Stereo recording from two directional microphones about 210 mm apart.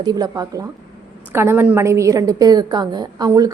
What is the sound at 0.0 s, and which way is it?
A woman's voice, 20° right (ahead or behind).